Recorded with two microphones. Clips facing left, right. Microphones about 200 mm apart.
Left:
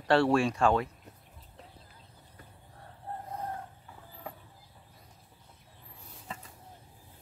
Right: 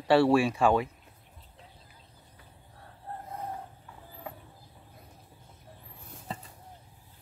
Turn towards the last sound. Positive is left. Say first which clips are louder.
# right 4 dB
turn(degrees=-35)  # may be behind; listen again after turning